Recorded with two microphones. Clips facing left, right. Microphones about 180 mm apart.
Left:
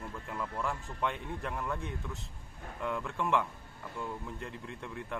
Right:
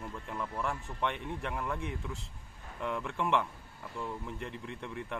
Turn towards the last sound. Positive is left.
turn(degrees=0)  # may be behind; listen again after turning